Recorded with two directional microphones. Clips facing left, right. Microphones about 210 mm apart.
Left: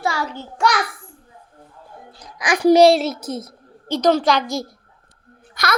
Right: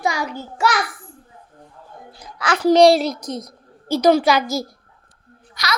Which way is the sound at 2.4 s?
15° left (ahead or behind).